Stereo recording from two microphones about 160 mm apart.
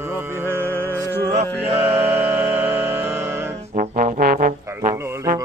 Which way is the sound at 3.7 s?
60° right (ahead or behind).